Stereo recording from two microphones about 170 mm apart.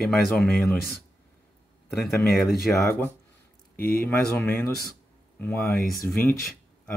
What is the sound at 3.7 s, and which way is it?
Speech, 65° left (ahead or behind).